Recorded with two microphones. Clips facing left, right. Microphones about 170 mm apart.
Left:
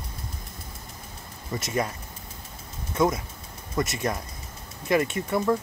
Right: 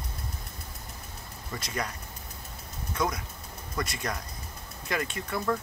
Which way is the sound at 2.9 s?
25° left (ahead or behind).